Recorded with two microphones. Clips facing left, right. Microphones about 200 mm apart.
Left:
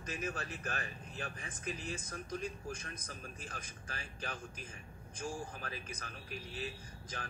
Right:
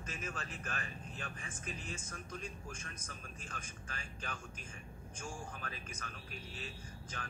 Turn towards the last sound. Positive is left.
turn(degrees=35)  # may be behind; listen again after turning